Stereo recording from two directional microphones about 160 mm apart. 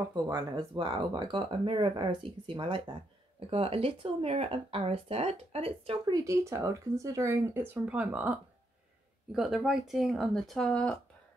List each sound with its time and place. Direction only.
0.1 s speech: 25° right (ahead or behind)
6.1 s speech: 20° right (ahead or behind)
9.3 s speech: centre (ahead or behind)